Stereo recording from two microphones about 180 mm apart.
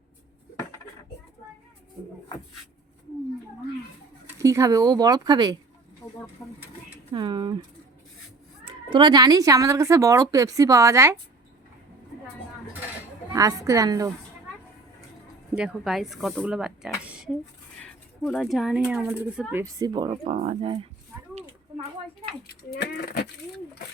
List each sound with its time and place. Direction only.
4.4 s speech: 15° right (ahead or behind)
7.1 s speech: 25° right (ahead or behind)
8.6 s speech: 25° right (ahead or behind)
13.3 s speech: 20° right (ahead or behind)
15.5 s speech: 5° right (ahead or behind)
19.6 s speech: 20° right (ahead or behind)
22.8 s speech: 65° left (ahead or behind)